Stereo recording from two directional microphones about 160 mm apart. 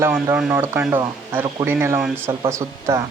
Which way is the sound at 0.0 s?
15° right (ahead or behind).